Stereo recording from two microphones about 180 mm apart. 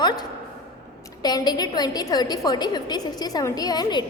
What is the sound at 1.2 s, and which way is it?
A woman's voice, 20° left (ahead or behind).